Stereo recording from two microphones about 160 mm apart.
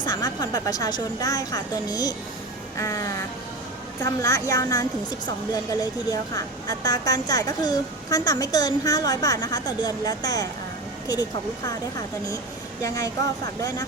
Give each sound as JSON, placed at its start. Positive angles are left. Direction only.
{"t": 0.0, "sound": "speech", "side_deg": 25}